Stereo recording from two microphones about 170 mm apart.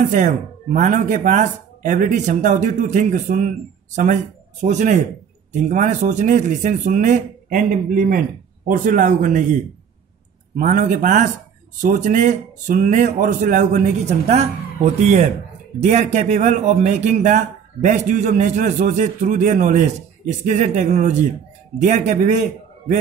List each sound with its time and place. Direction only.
0.1 s speech: 50° right (ahead or behind)
10.5 s speech: 50° right (ahead or behind)